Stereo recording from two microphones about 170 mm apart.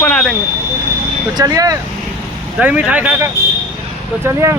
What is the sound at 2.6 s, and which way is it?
Speech, 10° right (ahead or behind).